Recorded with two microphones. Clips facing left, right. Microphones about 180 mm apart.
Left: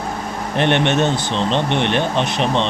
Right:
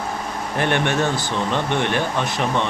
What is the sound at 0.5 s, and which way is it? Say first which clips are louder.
Speech: left 4 dB; 20° left (ahead or behind).